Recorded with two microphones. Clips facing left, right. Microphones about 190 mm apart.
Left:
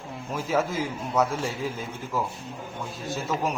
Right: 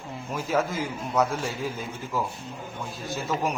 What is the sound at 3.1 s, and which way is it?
Speech, centre (ahead or behind).